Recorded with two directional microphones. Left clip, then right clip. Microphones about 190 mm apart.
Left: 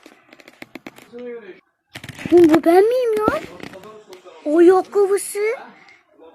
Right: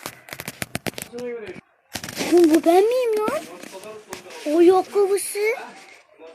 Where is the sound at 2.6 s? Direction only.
20° left (ahead or behind).